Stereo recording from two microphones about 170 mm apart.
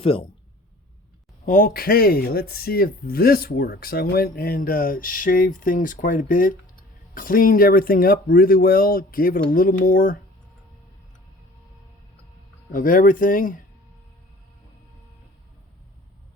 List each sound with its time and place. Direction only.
0.0 s speech: 35° left (ahead or behind)
1.5 s speech: 55° left (ahead or behind)
12.7 s speech: 55° left (ahead or behind)